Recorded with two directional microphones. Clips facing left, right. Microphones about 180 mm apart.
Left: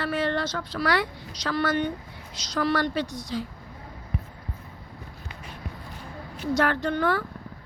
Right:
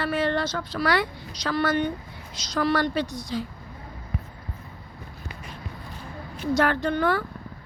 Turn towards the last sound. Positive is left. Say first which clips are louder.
# right 1 dB
turn(degrees=-10)  # may be behind; listen again after turning